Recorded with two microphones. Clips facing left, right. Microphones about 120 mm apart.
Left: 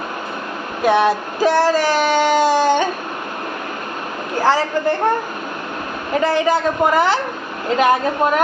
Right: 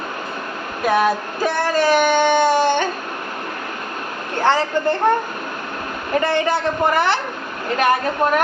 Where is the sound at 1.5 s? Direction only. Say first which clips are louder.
Left 7 dB; 90° left.